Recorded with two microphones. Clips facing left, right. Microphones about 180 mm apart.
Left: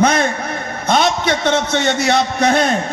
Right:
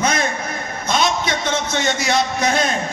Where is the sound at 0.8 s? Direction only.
60° left (ahead or behind).